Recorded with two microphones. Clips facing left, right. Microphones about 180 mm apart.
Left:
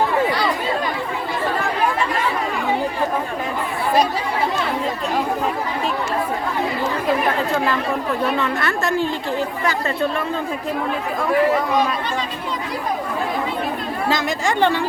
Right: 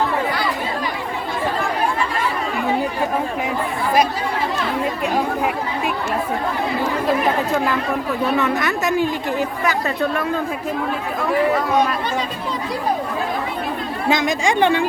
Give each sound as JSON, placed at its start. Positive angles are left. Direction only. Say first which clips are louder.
{"t": 8.4, "sound": "a woman's voice", "louder": "right 2 dB", "side_deg": -15}
{"t": 14.1, "sound": "a woman's voice", "louder": "right 4 dB", "side_deg": -15}